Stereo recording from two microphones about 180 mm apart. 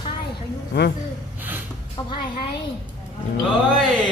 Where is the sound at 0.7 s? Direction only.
70° left (ahead or behind).